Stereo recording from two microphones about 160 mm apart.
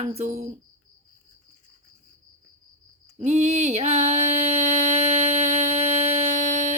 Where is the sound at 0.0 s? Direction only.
40° right (ahead or behind).